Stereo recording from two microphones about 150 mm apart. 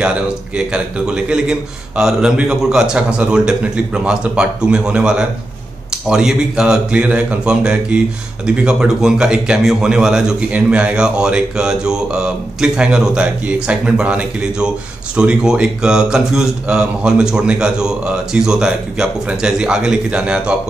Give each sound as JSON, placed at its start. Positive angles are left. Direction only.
{"t": 0.7, "sound": "a man's voice", "side_deg": -5}